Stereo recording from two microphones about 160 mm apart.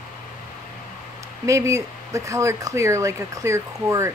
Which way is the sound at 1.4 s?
20° right (ahead or behind).